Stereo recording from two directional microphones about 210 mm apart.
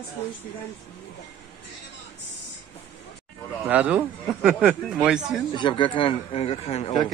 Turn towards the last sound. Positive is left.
turn(degrees=25)  # may be behind; listen again after turning